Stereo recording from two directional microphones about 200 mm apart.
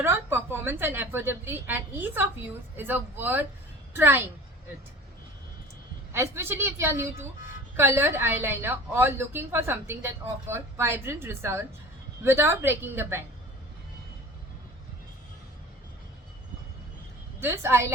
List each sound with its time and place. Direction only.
0.0 s a woman's voice: 10° right (ahead or behind)
6.1 s a woman's voice: 10° right (ahead or behind)
17.4 s a woman's voice: 10° right (ahead or behind)